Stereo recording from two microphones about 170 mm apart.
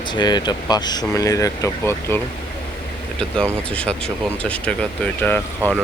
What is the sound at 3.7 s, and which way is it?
Speech, 5° left (ahead or behind).